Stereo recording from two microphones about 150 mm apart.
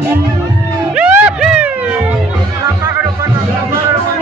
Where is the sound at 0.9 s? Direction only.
5° right (ahead or behind).